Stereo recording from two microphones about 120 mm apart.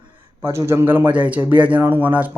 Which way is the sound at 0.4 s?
20° right (ahead or behind).